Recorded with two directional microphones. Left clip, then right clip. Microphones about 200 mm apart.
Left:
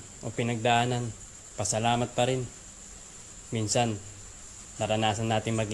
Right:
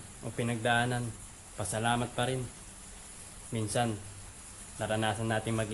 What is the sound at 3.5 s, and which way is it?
Speech, 20° left (ahead or behind).